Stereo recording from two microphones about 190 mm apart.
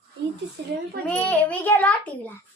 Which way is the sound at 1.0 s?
10° left (ahead or behind).